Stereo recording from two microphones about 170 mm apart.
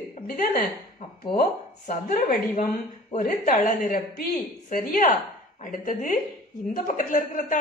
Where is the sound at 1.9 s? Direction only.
45° left (ahead or behind).